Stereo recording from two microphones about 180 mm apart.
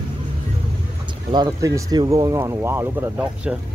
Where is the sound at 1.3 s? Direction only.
20° right (ahead or behind).